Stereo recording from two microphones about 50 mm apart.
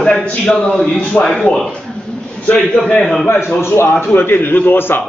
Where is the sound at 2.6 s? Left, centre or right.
Centre.